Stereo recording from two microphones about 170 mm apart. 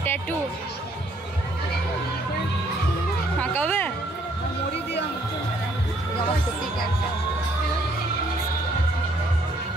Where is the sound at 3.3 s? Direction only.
10° left (ahead or behind).